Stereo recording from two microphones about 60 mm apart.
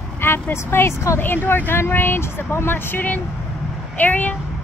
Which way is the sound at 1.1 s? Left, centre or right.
Left.